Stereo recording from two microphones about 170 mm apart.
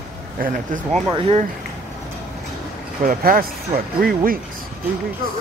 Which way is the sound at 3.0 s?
55° right (ahead or behind).